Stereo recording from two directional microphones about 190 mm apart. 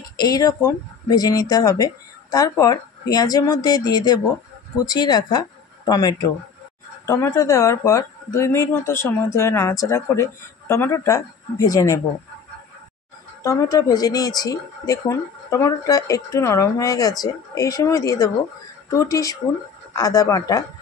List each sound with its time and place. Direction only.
0.2 s speech: 20° left (ahead or behind)
13.4 s speech: 15° left (ahead or behind)